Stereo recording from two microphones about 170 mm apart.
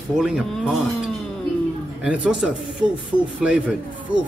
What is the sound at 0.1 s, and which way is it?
A man's voice, 5° right (ahead or behind).